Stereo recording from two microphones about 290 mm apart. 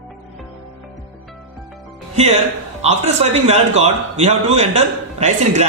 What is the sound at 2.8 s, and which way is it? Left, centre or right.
A man's voice, right.